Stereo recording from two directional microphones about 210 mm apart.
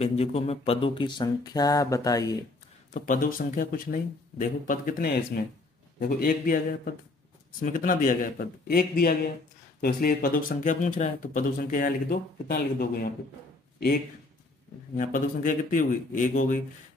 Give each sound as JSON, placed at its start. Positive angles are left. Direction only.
{"t": 0.0, "sound": "speech", "side_deg": 30}
{"t": 2.9, "sound": "speech", "side_deg": 40}
{"t": 15.0, "sound": "speech", "side_deg": 40}